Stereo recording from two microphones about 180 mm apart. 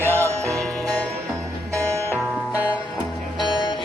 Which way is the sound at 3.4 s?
25° left (ahead or behind).